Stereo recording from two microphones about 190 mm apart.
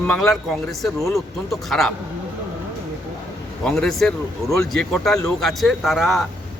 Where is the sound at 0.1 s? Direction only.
Centre (ahead or behind).